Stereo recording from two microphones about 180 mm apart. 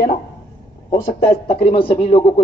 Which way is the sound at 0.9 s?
35° left (ahead or behind).